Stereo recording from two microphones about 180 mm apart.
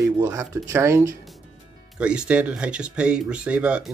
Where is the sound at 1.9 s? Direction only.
5° right (ahead or behind).